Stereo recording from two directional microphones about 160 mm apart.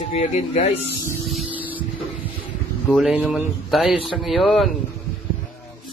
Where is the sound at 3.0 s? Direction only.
Centre (ahead or behind).